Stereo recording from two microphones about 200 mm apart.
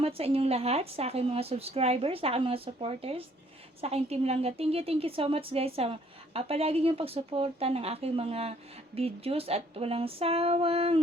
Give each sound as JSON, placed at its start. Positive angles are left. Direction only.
{"t": 0.0, "sound": "a woman's voice", "side_deg": -30}